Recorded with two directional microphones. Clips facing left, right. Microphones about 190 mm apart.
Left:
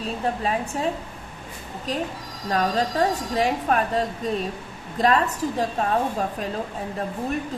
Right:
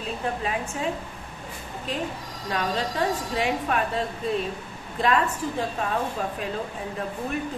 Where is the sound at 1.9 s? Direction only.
40° left (ahead or behind).